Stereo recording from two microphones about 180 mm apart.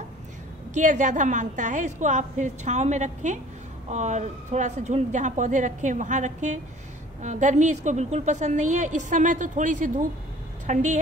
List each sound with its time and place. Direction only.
0.7 s a woman's voice: 45° right (ahead or behind)